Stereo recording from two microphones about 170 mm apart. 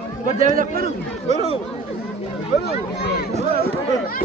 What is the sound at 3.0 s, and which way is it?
Speech, 80° left.